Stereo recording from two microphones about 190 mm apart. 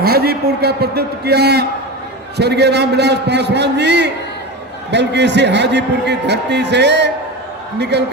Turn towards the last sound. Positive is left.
turn(degrees=-60)  # may be behind; listen again after turning